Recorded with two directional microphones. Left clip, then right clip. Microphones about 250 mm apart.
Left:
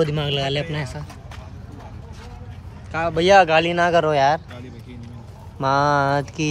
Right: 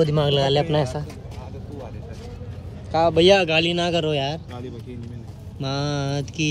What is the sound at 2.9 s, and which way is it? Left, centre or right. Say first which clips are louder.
Speech: right 1 dB; centre.